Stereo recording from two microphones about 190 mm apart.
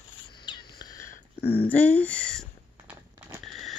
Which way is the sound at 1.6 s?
10° left (ahead or behind).